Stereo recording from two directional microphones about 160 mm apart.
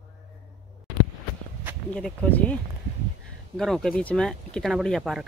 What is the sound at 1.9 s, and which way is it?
Speech, 5° left (ahead or behind).